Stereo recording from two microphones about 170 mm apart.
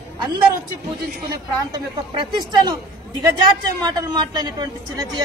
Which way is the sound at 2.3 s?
25° right (ahead or behind).